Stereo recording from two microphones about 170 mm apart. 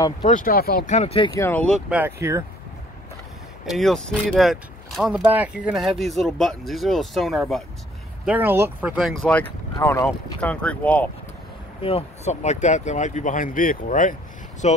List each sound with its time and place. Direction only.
0.2 s speech: 50° left (ahead or behind)
0.8 s speech: 40° left (ahead or behind)
1.3 s speech: 15° left (ahead or behind)
1.9 s speech: 10° right (ahead or behind)
3.6 s speech: centre (ahead or behind)
8.3 s speech: 10° right (ahead or behind)
9.3 s speech: 10° left (ahead or behind)
11.8 s speech: 40° left (ahead or behind)